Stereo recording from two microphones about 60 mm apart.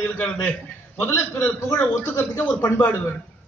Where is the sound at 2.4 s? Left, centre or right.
Left.